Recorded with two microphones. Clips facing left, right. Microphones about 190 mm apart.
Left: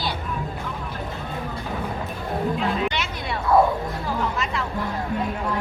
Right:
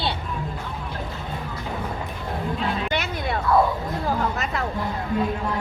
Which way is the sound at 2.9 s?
50° right (ahead or behind).